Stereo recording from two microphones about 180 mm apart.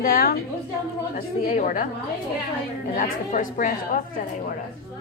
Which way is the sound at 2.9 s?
45° left (ahead or behind).